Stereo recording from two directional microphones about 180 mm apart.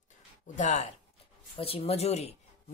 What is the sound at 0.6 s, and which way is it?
Speech, 40° left (ahead or behind).